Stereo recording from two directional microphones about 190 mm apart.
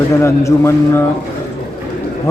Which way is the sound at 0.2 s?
15° left (ahead or behind).